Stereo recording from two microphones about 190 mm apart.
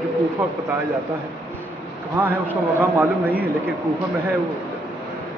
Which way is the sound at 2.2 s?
10° right (ahead or behind).